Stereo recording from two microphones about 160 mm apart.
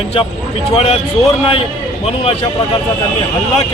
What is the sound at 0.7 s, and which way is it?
Speech, 40° left (ahead or behind).